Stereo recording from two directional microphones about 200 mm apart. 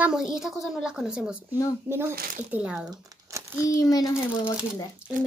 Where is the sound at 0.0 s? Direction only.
5° right (ahead or behind).